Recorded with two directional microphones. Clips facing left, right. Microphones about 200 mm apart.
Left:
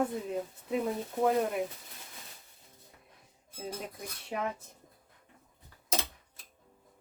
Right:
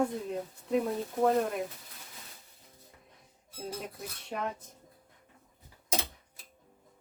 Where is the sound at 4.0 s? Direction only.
5° left (ahead or behind).